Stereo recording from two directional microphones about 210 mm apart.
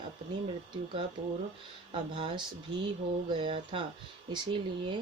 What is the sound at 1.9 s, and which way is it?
Speech, 25° right (ahead or behind).